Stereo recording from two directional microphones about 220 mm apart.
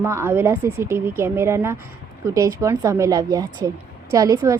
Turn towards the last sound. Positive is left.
turn(degrees=-15)  # may be behind; listen again after turning